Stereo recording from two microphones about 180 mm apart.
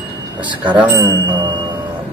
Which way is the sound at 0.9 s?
25° right (ahead or behind).